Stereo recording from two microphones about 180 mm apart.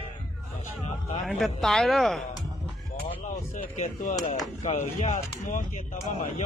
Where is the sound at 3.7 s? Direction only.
40° left (ahead or behind).